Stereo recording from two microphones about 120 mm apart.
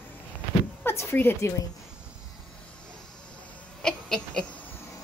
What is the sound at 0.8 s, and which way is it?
Speech, 20° left (ahead or behind).